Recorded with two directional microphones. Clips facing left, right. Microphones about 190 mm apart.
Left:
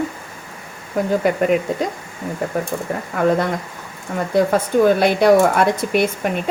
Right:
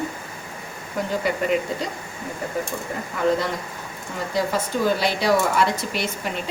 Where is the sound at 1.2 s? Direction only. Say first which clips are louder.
Left 3 dB; 50° left (ahead or behind).